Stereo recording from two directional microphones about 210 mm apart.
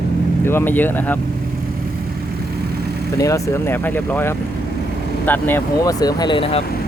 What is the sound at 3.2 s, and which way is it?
Speech, 15° left (ahead or behind).